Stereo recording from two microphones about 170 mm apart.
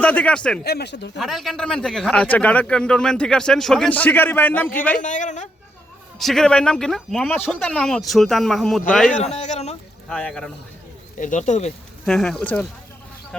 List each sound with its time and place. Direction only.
0.0 s a man's voice: 5° left (ahead or behind)
0.6 s speech: 70° left (ahead or behind); by 1.1 s 90° left
1.2 s speech: centre (ahead or behind)
5.0 s speech: 50° left (ahead or behind)
6.1 s speech: centre (ahead or behind)
9.3 s a man's voice: 40° left (ahead or behind)
10.1 s speech: 5° left (ahead or behind)
11.2 s speech: 45° left (ahead or behind)
12.0 s speech: 5° left (ahead or behind)